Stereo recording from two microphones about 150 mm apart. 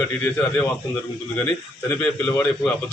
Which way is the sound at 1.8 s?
15° left (ahead or behind).